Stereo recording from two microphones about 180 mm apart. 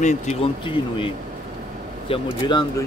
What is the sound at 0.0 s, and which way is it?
Speech, 40° left (ahead or behind).